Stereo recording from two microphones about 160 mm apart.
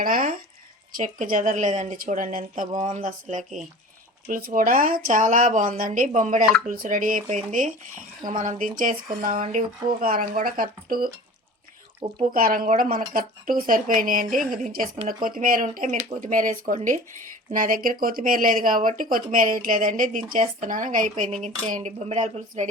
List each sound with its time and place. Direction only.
0.0 s speech: 60° right (ahead or behind)
12.2 s speech: 60° right (ahead or behind)